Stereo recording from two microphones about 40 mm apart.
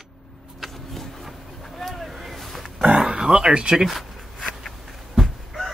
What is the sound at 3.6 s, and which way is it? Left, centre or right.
Speech, centre.